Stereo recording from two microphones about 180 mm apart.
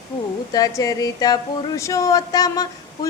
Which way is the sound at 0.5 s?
20° left (ahead or behind).